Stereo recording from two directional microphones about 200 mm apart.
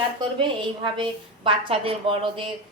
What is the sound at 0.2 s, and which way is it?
A woman's voice, 25° right (ahead or behind).